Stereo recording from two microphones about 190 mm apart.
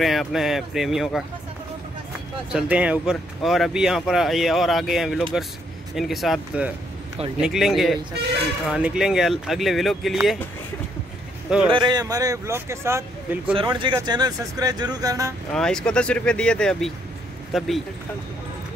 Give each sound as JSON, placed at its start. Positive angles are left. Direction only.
{"t": 0.0, "sound": "speech", "side_deg": 0}
{"t": 2.5, "sound": "speech", "side_deg": -5}
{"t": 11.7, "sound": "speech", "side_deg": -20}
{"t": 13.6, "sound": "speech", "side_deg": -25}
{"t": 15.5, "sound": "speech", "side_deg": 5}